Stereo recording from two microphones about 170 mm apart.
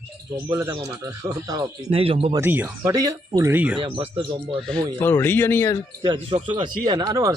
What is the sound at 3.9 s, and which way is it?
Speech, 30° right (ahead or behind).